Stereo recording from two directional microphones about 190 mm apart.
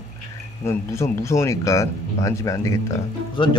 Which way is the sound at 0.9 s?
15° left (ahead or behind).